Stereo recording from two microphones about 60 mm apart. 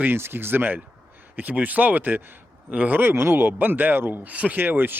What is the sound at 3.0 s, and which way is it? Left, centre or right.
Speech, right.